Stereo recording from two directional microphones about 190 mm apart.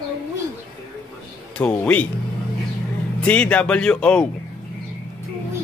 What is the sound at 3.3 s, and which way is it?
Speech, 5° left (ahead or behind).